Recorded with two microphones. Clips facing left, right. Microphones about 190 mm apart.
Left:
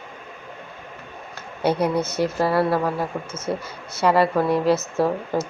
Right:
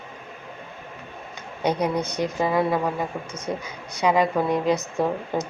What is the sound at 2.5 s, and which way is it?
Speech, 15° right (ahead or behind).